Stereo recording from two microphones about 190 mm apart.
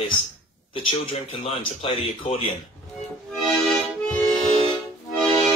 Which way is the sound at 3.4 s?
Centre (ahead or behind).